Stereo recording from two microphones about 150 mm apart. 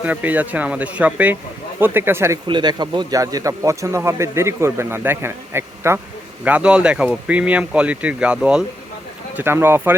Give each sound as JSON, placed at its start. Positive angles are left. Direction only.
{"t": 0.0, "sound": "speech", "side_deg": -10}
{"t": 2.5, "sound": "a man's voice", "side_deg": -30}